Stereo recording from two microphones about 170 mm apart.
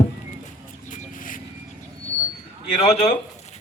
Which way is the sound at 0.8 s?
50° left (ahead or behind).